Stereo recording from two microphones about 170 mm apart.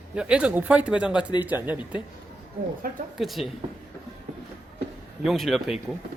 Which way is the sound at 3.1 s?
Centre (ahead or behind).